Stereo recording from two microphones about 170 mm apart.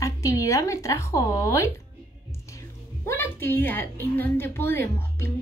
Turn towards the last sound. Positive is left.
turn(degrees=15)  # may be behind; listen again after turning